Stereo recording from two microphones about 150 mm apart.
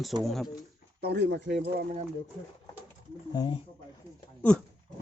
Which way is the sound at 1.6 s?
90° right.